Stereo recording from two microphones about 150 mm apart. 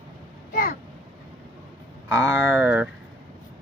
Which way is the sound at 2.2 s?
10° right (ahead or behind).